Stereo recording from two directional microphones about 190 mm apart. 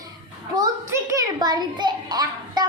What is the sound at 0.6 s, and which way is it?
A child's voice, 15° right (ahead or behind).